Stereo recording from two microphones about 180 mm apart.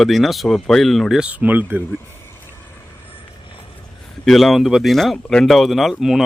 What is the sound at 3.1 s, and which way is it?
Vehicle, 30° left (ahead or behind).